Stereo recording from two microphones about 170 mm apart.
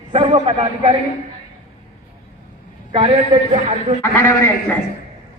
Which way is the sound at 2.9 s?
35° right (ahead or behind).